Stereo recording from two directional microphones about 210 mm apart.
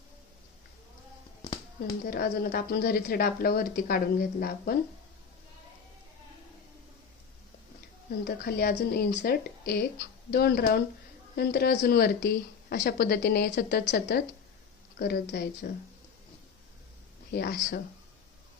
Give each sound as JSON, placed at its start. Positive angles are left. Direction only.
{"t": 2.0, "sound": "a woman's voice", "side_deg": 45}
{"t": 8.2, "sound": "a woman's voice", "side_deg": 45}
{"t": 17.3, "sound": "a woman's voice", "side_deg": 50}